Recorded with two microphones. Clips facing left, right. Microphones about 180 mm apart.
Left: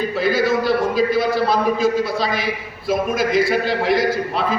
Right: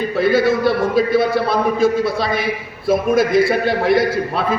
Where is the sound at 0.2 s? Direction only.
55° right (ahead or behind).